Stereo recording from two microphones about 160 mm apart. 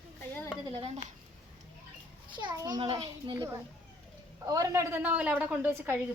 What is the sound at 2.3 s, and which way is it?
Speech, 30° right (ahead or behind).